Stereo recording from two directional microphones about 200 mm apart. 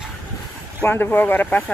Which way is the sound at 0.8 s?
10° left (ahead or behind).